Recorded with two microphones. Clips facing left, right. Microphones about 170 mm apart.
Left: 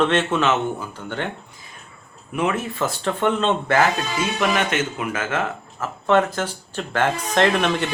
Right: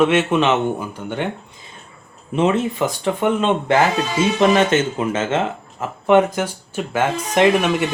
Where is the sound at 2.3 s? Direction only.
25° right (ahead or behind).